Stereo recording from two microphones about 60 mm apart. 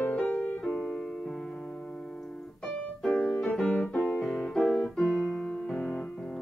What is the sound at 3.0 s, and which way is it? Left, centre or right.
Piano, centre.